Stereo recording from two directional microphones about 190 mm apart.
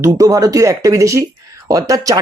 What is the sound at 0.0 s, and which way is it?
Speech, 20° right (ahead or behind).